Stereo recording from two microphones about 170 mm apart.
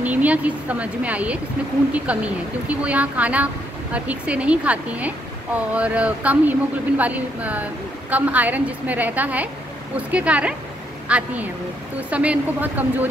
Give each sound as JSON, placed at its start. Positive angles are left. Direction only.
{"t": 0.0, "sound": "a woman's voice", "side_deg": -10}